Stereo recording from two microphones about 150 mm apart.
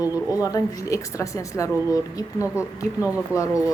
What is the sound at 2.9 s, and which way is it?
Speech, 10° right (ahead or behind).